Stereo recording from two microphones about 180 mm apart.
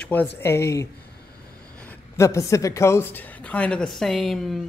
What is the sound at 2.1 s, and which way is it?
A woman's voice, 15° left (ahead or behind).